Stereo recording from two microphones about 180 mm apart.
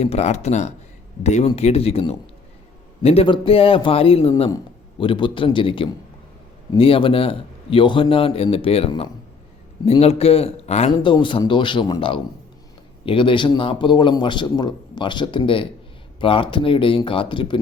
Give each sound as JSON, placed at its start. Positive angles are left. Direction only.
{"t": 0.0, "sound": "a man's voice", "side_deg": 35}